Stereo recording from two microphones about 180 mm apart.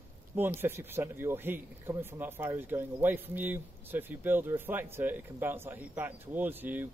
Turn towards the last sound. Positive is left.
turn(degrees=-10)  # may be behind; listen again after turning